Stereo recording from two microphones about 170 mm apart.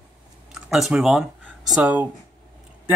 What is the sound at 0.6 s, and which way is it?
Speech, centre (ahead or behind).